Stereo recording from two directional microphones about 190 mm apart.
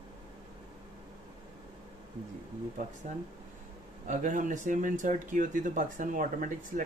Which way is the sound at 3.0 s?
40° right (ahead or behind).